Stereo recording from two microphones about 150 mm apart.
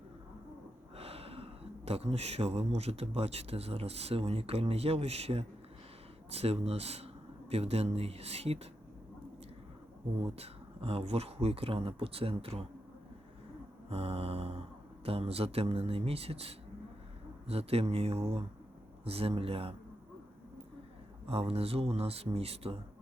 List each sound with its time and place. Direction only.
0.9 s speech: 40° right (ahead or behind)
10.2 s speech: 40° right (ahead or behind)
13.9 s speech: 40° right (ahead or behind)
21.2 s speech: 40° right (ahead or behind)